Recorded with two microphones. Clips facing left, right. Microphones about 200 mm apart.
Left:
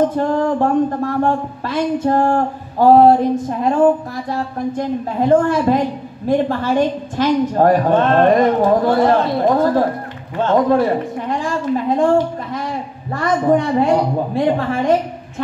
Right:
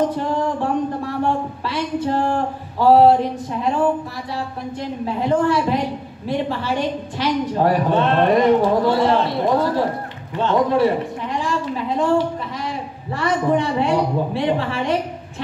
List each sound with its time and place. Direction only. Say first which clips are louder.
0.1 s a man's voice: left 5 dB; 50° left (ahead or behind)